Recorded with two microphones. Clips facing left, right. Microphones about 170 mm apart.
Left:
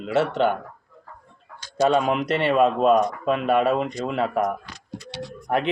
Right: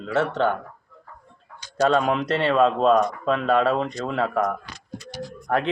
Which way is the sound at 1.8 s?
10° left (ahead or behind).